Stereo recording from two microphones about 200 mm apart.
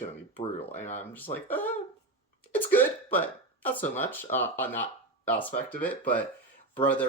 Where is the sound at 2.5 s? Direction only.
10° left (ahead or behind).